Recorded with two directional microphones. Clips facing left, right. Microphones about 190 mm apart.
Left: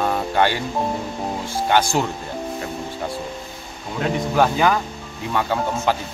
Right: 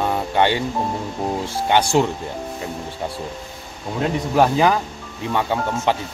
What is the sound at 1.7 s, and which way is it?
Speech, 20° right (ahead or behind).